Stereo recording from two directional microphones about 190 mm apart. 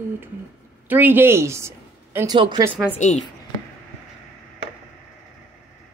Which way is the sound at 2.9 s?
40° left (ahead or behind).